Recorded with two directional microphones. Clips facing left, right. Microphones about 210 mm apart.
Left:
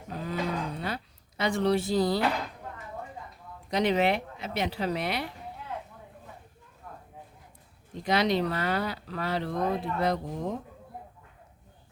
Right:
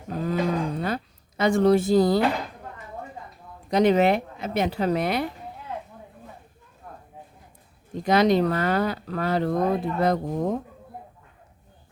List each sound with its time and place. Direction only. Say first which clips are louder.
0.1 s a sound: right 7 dB; 45° right (ahead or behind)
3.7 s speech: right 6 dB; 45° right (ahead or behind)
8.0 s speech: right 6 dB; 45° right (ahead or behind)